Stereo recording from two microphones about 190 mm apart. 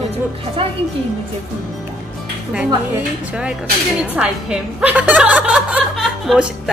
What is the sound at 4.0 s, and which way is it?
A woman's voice, 5° right (ahead or behind).